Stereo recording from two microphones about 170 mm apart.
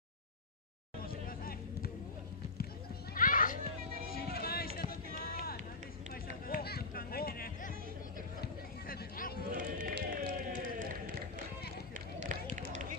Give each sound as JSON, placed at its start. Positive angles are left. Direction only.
{"t": 1.0, "sound": "a sound", "side_deg": 60}
{"t": 3.2, "sound": "children playing", "side_deg": 55}
{"t": 4.1, "sound": "run", "side_deg": 65}
{"t": 6.4, "sound": "music", "side_deg": 65}
{"t": 8.4, "sound": "a sound", "side_deg": 60}
{"t": 9.6, "sound": "run", "side_deg": -55}
{"t": 12.2, "sound": "run", "side_deg": -45}